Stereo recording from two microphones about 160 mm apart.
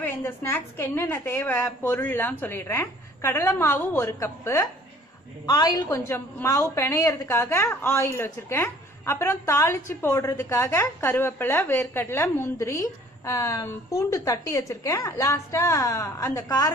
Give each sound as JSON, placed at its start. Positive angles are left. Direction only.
{"t": 0.0, "sound": "a woman's voice", "side_deg": 15}